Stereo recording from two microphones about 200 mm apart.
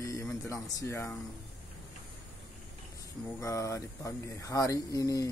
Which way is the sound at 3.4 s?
15° left (ahead or behind).